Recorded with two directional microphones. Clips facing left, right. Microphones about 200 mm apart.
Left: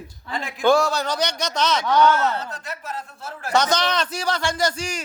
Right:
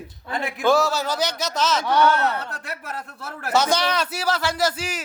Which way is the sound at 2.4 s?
65° right (ahead or behind).